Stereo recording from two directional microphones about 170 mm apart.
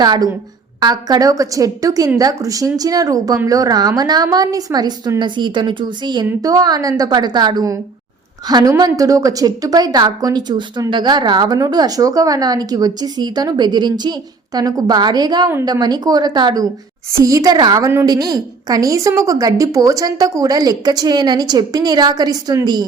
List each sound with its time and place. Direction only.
0.0 s a woman's voice: 25° right (ahead or behind)